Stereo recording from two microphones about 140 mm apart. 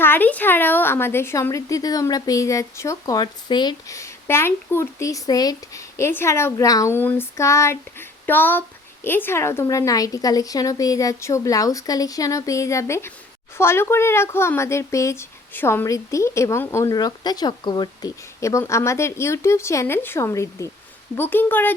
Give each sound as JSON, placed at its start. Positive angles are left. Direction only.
{"t": 0.0, "sound": "a woman's voice", "side_deg": 15}